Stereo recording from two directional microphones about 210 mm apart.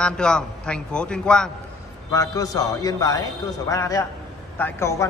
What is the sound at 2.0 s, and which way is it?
A man's voice, 15° left (ahead or behind).